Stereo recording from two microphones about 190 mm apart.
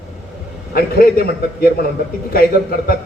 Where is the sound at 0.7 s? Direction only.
50° left (ahead or behind).